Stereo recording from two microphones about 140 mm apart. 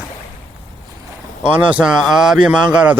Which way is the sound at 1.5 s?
10° right (ahead or behind).